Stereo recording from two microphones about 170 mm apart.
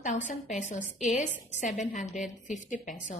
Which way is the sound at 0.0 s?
45° left (ahead or behind).